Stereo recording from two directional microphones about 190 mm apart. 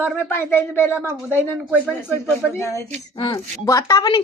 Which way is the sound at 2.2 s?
10° left (ahead or behind).